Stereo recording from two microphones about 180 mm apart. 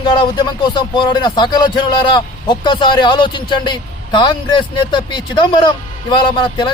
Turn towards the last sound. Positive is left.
turn(degrees=25)  # may be behind; listen again after turning